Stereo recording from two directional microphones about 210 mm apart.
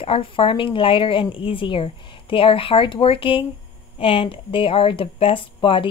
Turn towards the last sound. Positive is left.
turn(degrees=25)  # may be behind; listen again after turning